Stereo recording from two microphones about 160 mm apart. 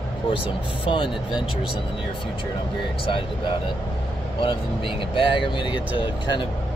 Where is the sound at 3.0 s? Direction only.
30° left (ahead or behind).